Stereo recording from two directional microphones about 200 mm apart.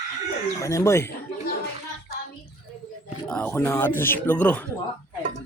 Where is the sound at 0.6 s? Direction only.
15° left (ahead or behind).